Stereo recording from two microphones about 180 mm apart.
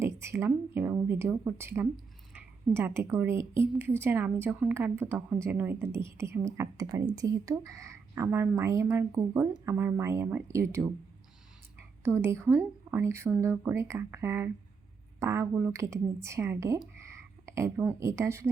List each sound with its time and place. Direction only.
0.0 s speech: 15° right (ahead or behind)